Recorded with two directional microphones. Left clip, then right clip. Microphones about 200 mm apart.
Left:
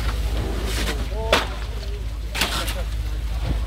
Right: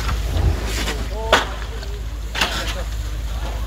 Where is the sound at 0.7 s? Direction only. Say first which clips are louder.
Right 3 dB; 40° left (ahead or behind).